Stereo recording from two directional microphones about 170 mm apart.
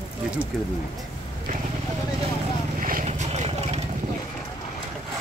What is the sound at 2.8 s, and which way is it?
Vehicle, 55° right (ahead or behind).